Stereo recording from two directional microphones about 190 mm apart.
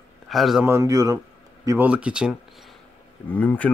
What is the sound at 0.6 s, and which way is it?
Speech, 15° right (ahead or behind).